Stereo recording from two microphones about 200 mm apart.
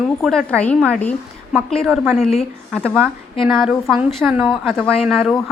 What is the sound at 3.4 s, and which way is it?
A woman's voice, centre (ahead or behind).